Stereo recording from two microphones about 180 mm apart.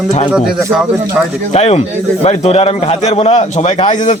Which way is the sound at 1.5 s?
35° left (ahead or behind).